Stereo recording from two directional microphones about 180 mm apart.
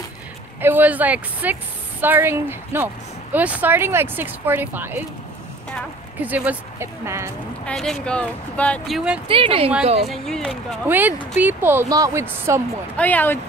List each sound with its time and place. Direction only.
0.6 s a woman's voice: 10° right (ahead or behind)
6.2 s a woman's voice: 10° right (ahead or behind)
7.6 s speech: centre (ahead or behind)
9.3 s speech: 30° right (ahead or behind)
10.0 s speech: centre (ahead or behind)
10.9 s a woman's voice: 10° right (ahead or behind)
12.9 s speech: 10° left (ahead or behind)